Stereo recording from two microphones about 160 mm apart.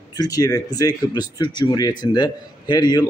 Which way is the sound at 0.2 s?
25° left (ahead or behind).